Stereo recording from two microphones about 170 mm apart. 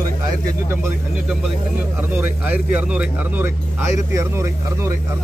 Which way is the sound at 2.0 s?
10° right (ahead or behind).